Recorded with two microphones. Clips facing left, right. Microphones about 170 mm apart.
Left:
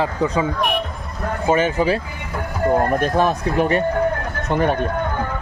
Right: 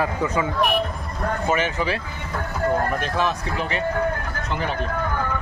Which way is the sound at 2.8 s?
45° left (ahead or behind).